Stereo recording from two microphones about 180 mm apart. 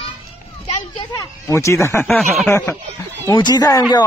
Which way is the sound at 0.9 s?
20° left (ahead or behind).